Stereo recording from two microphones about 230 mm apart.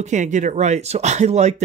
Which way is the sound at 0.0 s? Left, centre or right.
Right.